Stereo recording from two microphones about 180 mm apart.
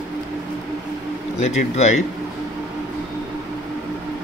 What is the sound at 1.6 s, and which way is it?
Speech, 40° left (ahead or behind).